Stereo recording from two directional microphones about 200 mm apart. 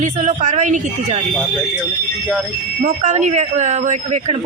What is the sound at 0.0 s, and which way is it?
Speech, 35° right (ahead or behind).